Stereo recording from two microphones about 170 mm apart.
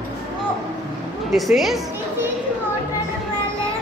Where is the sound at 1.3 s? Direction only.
Centre (ahead or behind).